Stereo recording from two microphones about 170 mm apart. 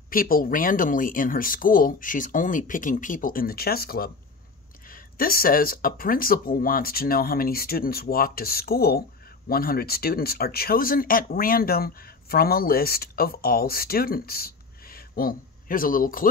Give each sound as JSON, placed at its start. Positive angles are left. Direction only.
{"t": 0.1, "sound": "speech", "side_deg": 55}